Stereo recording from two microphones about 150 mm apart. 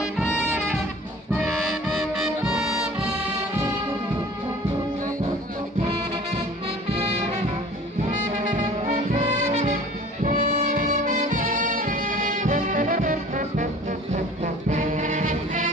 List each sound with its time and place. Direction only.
1.3 s music: 5° right (ahead or behind)
8.4 s brass instrument: 55° right (ahead or behind)
10.2 s music: 65° right (ahead or behind)